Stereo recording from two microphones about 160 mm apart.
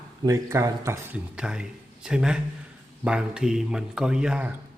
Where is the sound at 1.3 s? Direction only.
5° right (ahead or behind).